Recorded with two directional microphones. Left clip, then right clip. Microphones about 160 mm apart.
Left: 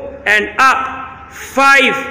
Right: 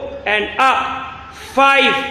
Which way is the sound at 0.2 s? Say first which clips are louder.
Left 4 dB; 5° left (ahead or behind).